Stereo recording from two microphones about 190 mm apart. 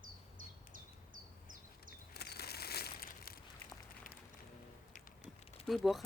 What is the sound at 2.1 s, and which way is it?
Crushing, 55° left (ahead or behind).